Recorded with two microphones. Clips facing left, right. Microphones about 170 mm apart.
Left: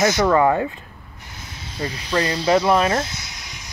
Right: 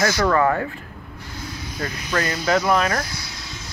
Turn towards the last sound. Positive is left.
turn(degrees=15)  # may be behind; listen again after turning